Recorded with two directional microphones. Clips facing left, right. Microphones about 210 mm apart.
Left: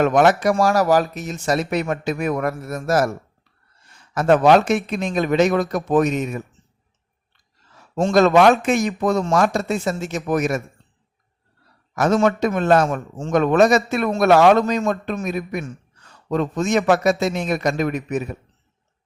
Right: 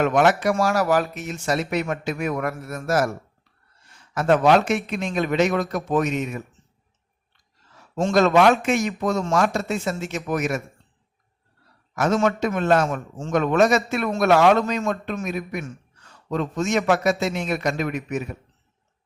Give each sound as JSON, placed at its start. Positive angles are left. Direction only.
{"t": 0.0, "sound": "speech", "side_deg": 40}
{"t": 4.1, "sound": "speech", "side_deg": 40}
{"t": 7.9, "sound": "speech", "side_deg": 35}
{"t": 12.1, "sound": "speech", "side_deg": 35}